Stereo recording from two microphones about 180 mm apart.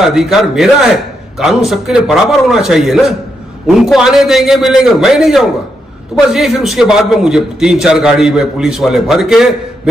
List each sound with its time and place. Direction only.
0.0 s a man's voice: centre (ahead or behind)